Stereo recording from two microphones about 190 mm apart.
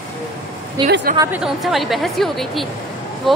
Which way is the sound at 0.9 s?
65° right (ahead or behind).